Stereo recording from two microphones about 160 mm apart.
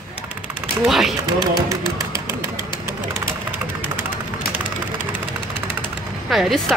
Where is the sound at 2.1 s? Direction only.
25° left (ahead or behind).